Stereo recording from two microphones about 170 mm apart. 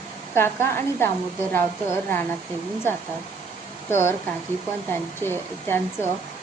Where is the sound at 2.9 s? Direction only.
15° left (ahead or behind).